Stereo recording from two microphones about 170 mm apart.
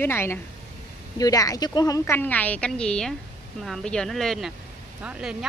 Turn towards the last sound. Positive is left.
turn(degrees=-5)  # may be behind; listen again after turning